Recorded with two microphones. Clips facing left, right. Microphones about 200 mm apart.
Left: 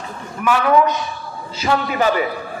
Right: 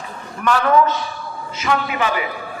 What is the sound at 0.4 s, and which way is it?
Speech, 15° left (ahead or behind).